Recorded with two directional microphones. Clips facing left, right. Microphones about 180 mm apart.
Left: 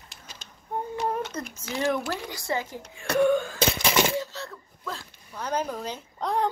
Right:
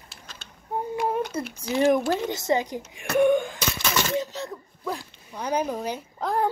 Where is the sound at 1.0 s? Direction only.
10° right (ahead or behind).